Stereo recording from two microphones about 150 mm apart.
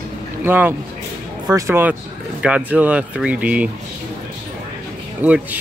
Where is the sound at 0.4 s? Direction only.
15° right (ahead or behind).